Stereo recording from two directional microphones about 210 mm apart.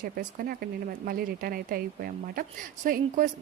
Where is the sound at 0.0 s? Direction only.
45° right (ahead or behind).